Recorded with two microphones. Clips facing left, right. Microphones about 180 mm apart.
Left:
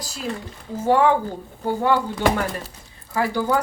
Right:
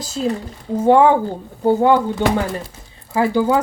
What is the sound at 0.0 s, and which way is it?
Speech, 20° right (ahead or behind).